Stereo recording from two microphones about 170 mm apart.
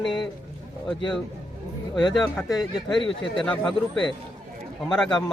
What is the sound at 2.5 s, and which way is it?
Speech, 25° left (ahead or behind).